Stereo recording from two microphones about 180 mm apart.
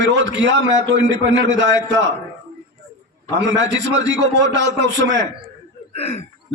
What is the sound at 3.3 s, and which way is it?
A man's voice, 90° right.